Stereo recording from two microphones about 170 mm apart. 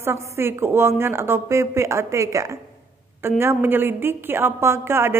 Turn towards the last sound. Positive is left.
turn(degrees=-15)  # may be behind; listen again after turning